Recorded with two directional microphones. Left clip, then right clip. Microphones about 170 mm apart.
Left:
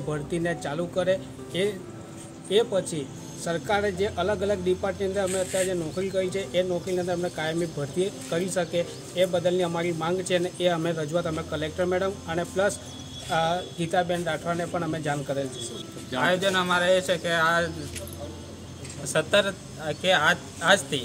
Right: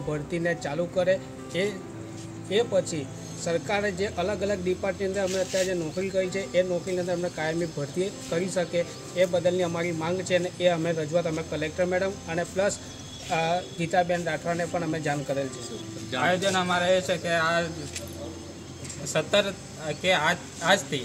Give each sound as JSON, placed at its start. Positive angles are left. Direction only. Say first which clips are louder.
{"t": 0.1, "sound": "speech", "louder": "even", "side_deg": -5}
{"t": 16.2, "sound": "speech", "louder": "left 1 dB", "side_deg": 35}
{"t": 19.1, "sound": "speech", "louder": "left 2 dB", "side_deg": 5}